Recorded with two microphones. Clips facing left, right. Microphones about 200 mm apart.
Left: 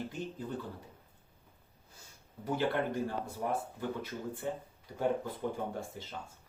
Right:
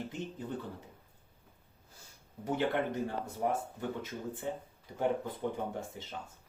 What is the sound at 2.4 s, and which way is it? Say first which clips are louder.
Speech: even; 20° right (ahead or behind).